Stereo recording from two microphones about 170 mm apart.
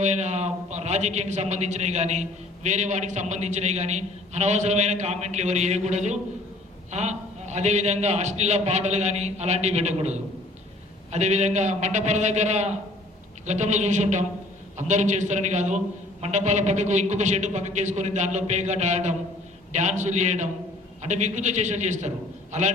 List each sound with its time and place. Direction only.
0.0 s a man's voice: 40° right (ahead or behind)